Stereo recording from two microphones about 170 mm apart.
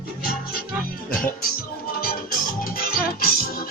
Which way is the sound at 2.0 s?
60° left (ahead or behind).